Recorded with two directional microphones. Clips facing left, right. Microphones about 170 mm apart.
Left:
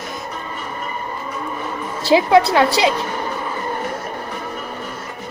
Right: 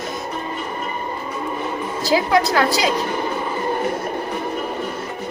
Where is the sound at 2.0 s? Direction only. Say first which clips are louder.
Left 5 dB; 25° left (ahead or behind).